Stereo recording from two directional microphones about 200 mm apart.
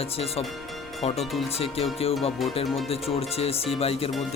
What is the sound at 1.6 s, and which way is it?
Speech, 30° left (ahead or behind).